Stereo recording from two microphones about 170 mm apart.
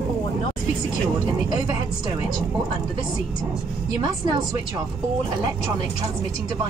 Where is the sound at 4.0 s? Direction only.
25° right (ahead or behind).